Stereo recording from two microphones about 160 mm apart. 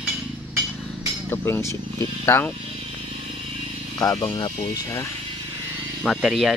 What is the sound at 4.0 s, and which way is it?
Speech, 20° left (ahead or behind).